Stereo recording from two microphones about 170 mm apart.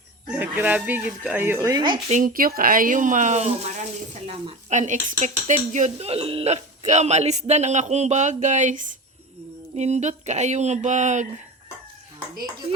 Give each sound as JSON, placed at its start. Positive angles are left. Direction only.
{"t": 0.3, "sound": "speech", "side_deg": -10}
{"t": 2.0, "sound": "speech", "side_deg": -50}